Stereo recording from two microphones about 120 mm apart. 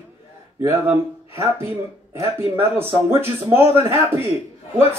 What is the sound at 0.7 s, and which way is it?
A man's voice, 20° right (ahead or behind).